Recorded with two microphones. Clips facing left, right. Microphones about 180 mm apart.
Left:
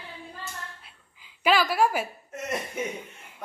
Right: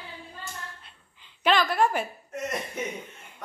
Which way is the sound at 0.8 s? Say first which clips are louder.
Even; 5° left (ahead or behind).